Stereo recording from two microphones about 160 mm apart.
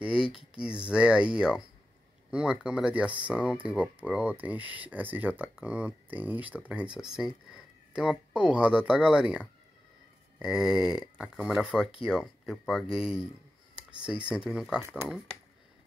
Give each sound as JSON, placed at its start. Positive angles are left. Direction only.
{"t": 0.0, "sound": "speech", "side_deg": -5}
{"t": 10.4, "sound": "speech", "side_deg": -5}